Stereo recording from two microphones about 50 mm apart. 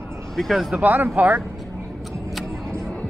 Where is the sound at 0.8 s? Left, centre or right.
Right.